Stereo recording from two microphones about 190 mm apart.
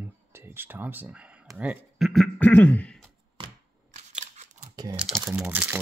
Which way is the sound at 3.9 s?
35° right (ahead or behind).